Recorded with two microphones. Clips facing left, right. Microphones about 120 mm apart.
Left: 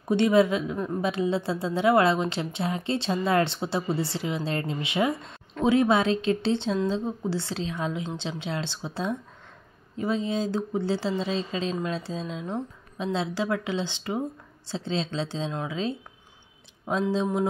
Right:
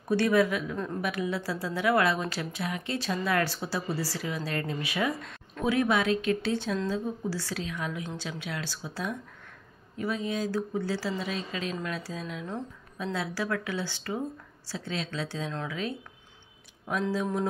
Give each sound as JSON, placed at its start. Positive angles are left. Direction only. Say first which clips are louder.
{"t": 0.1, "sound": "a woman's voice", "louder": "left 4 dB", "side_deg": 20}
{"t": 17.1, "sound": "a woman's voice", "louder": "left 4 dB", "side_deg": 20}